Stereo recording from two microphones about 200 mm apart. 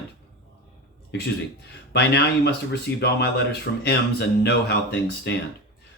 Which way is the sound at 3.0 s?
55° left (ahead or behind).